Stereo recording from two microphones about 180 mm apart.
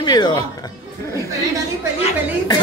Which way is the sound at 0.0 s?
25° left (ahead or behind).